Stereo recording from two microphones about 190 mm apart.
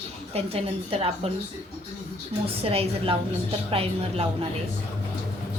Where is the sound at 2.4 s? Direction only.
30° right (ahead or behind).